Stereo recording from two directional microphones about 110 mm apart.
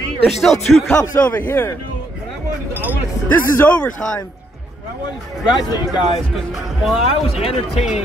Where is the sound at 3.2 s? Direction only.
15° left (ahead or behind).